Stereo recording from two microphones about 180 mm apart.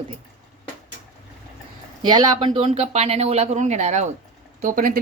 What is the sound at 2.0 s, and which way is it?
A woman's voice, 25° right (ahead or behind).